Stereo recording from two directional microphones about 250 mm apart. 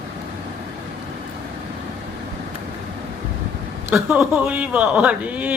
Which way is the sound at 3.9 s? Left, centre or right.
Centre.